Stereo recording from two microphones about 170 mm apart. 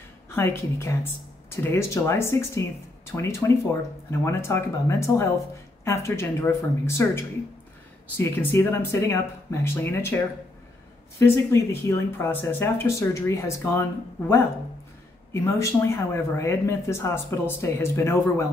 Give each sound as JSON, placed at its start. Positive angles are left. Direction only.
{"t": 0.3, "sound": "speech", "side_deg": 15}